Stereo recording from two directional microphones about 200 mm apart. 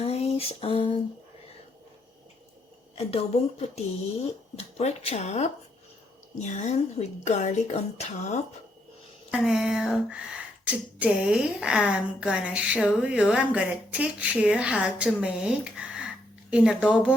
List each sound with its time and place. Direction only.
0.0 s a sound: 30° left (ahead or behind)
3.0 s speech: 30° left (ahead or behind)
9.3 s speech: centre (ahead or behind)